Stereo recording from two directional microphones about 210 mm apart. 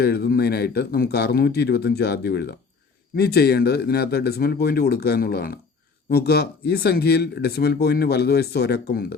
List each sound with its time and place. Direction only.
0.0 s speech: 50° left (ahead or behind)